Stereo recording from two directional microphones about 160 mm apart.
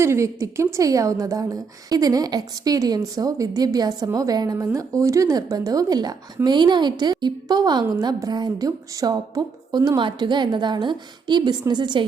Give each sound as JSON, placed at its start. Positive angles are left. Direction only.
{"t": 0.0, "sound": "a woman's voice", "side_deg": -15}